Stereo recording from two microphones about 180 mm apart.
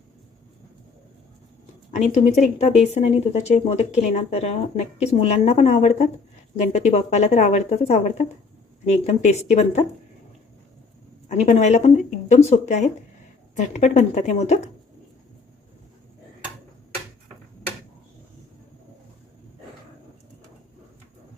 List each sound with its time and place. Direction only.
2.1 s speech: 40° left (ahead or behind)
11.3 s speech: 40° left (ahead or behind)